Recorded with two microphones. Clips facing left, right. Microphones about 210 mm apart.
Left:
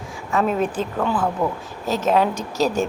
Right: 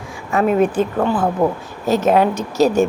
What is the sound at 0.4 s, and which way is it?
Speech, 5° right (ahead or behind).